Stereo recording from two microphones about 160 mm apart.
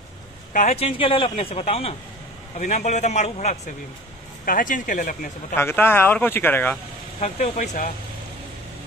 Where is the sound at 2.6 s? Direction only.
50° left (ahead or behind).